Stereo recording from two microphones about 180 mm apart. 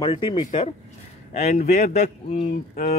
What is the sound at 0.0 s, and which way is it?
A man's voice, 30° left (ahead or behind).